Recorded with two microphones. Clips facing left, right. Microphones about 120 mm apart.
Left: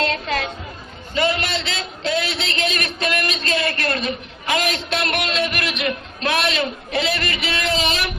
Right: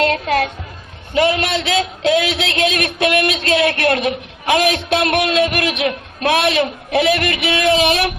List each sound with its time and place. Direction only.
0.0 s a woman's voice: 55° right (ahead or behind)